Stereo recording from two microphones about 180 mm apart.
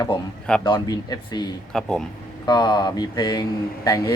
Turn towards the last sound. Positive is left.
turn(degrees=20)  # may be behind; listen again after turning